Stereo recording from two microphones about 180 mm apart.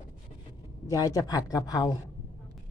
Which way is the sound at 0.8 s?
20° left (ahead or behind).